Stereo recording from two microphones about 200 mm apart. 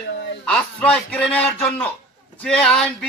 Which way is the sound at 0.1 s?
60° left (ahead or behind).